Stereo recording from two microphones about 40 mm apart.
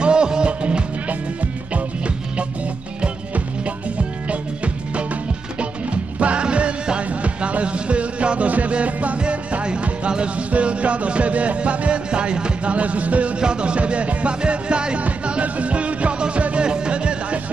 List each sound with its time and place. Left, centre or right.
0.0 s music: right
6.1 s music: right
13.4 s music: right